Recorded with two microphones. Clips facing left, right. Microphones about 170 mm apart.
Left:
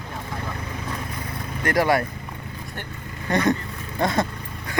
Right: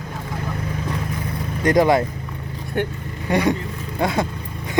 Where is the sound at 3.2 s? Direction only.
10° right (ahead or behind).